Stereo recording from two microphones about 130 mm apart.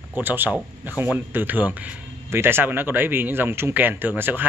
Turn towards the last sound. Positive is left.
turn(degrees=-15)  # may be behind; listen again after turning